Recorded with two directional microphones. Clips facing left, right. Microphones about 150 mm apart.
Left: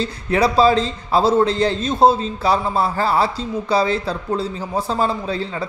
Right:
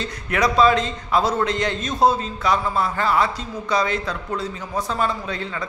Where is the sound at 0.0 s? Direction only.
30° left (ahead or behind).